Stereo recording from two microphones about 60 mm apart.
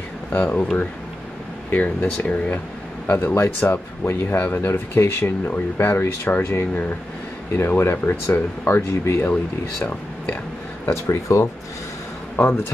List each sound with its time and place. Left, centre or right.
0.3 s speech: left
1.7 s speech: left
4.0 s speech: left
8.6 s speech: left
10.9 s speech: left
12.4 s speech: left